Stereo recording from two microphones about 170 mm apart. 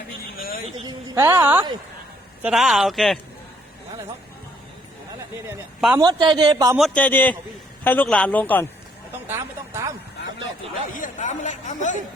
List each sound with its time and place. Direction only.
0.9 s a woman's voice: 15° right (ahead or behind); by 3.2 s centre (ahead or behind)
6.0 s a man's voice: 25° right (ahead or behind)
6.7 s a man's voice: 5° left (ahead or behind)
9.2 s a sound: 15° right (ahead or behind)
10.9 s chatter: 50° left (ahead or behind)